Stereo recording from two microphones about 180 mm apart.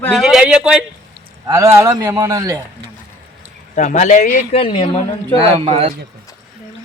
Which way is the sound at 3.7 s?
40° left (ahead or behind).